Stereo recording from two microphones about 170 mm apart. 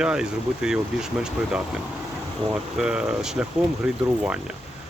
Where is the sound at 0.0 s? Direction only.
5° right (ahead or behind).